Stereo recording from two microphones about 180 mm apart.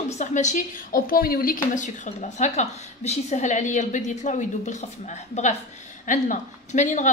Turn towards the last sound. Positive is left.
turn(degrees=40)  # may be behind; listen again after turning